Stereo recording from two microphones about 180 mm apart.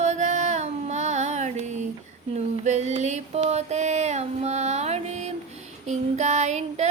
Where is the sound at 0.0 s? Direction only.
40° right (ahead or behind).